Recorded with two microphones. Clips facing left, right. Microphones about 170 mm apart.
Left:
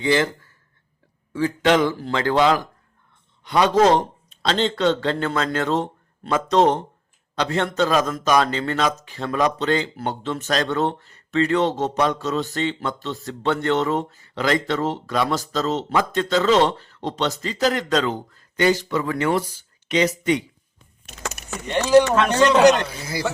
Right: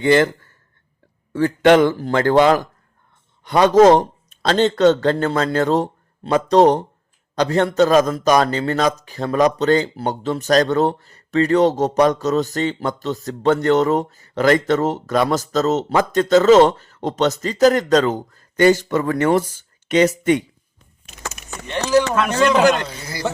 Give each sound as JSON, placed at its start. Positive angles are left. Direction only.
{"t": 0.0, "sound": "speech", "side_deg": -55}
{"t": 1.3, "sound": "a man's voice", "side_deg": -55}
{"t": 22.1, "sound": "a man's voice", "side_deg": -5}